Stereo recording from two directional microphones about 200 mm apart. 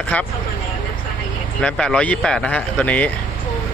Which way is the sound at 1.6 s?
5° left (ahead or behind).